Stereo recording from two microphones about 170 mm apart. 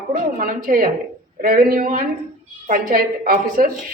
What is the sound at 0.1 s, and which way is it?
A woman's voice, 50° right (ahead or behind).